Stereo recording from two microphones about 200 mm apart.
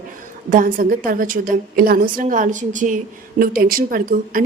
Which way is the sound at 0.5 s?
45° right (ahead or behind).